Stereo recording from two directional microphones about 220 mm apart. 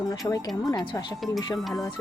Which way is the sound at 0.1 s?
15° left (ahead or behind).